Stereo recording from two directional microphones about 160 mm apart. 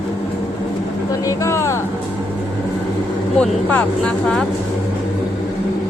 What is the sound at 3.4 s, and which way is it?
Speech, 5° left (ahead or behind).